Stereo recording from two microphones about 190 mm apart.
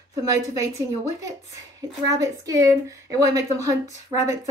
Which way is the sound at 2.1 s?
20° right (ahead or behind).